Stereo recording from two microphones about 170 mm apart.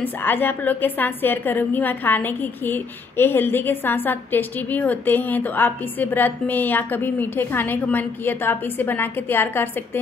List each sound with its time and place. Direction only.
0.0 s a woman's voice: 10° left (ahead or behind)